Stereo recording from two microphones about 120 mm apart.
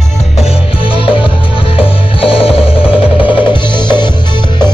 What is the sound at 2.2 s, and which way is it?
Music, 50° left (ahead or behind).